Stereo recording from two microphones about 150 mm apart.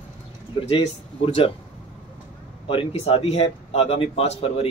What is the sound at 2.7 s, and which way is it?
Speech, 40° left (ahead or behind).